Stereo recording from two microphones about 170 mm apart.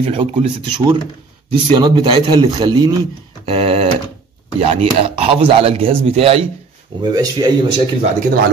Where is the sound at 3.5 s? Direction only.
35° right (ahead or behind).